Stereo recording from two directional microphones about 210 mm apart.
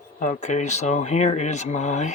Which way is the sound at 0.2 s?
35° left (ahead or behind).